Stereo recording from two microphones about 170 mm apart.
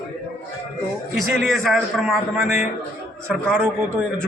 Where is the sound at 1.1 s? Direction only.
Centre (ahead or behind).